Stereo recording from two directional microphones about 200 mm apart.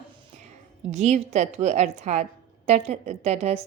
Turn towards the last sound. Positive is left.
turn(degrees=-30)  # may be behind; listen again after turning